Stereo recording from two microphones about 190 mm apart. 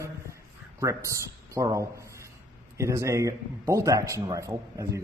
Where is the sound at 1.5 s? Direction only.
15° right (ahead or behind).